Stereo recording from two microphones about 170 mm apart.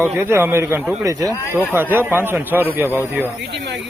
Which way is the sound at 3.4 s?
85° right.